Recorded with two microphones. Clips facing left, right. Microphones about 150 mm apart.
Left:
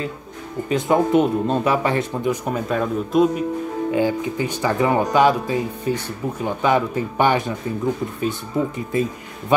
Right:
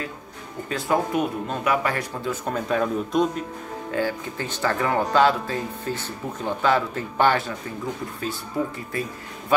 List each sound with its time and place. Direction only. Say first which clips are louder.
0.7 s speech: left 6 dB; 20° left (ahead or behind)
2.4 s speech: left 2 dB; 5° left (ahead or behind)
3.9 s speech: left 5 dB; 15° left (ahead or behind)